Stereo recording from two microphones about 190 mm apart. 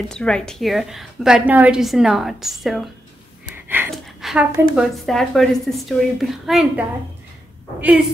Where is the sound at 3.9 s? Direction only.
Centre (ahead or behind).